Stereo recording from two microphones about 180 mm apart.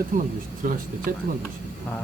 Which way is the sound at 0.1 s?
50° right (ahead or behind).